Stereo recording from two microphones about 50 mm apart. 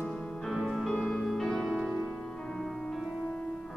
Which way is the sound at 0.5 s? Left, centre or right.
Centre.